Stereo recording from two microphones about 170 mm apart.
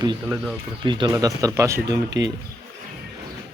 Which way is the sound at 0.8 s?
30° right (ahead or behind).